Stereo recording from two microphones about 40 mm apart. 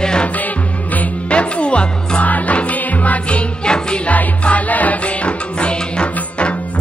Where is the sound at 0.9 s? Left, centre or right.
Left.